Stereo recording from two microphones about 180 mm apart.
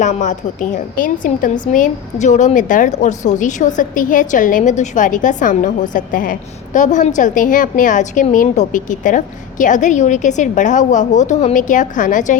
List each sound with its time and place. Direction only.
0.0 s a woman's voice: 40° left (ahead or behind)